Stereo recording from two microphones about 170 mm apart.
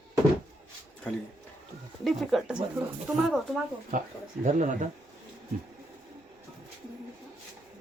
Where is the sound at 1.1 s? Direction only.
5° left (ahead or behind).